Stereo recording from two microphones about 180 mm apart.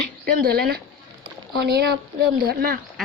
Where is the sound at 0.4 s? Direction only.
60° right (ahead or behind).